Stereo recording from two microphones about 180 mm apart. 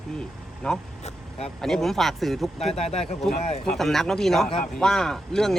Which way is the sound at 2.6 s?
35° left (ahead or behind).